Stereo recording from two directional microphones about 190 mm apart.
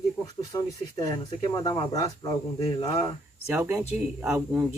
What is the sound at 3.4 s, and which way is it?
Speech, 10° right (ahead or behind).